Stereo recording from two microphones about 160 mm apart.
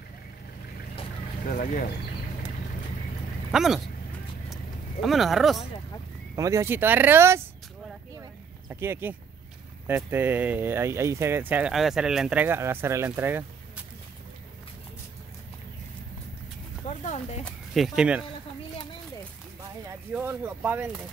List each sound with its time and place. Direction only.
1.4 s speech: 60° left (ahead or behind)
3.5 s speech: 5° right (ahead or behind)
5.0 s speech: centre (ahead or behind)
6.3 s speech: 20° right (ahead or behind)
8.6 s speech: 15° right (ahead or behind)
16.8 s a sound: 45° left (ahead or behind)
17.5 s speech: centre (ahead or behind)
19.9 s speech: 15° right (ahead or behind)